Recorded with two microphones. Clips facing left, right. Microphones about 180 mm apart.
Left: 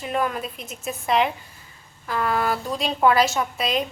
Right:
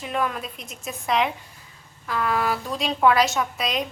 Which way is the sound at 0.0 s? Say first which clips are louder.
Left 2 dB; centre (ahead or behind).